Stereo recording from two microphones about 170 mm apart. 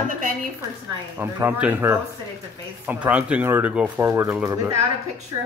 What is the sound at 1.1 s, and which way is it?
Speech, 10° right (ahead or behind).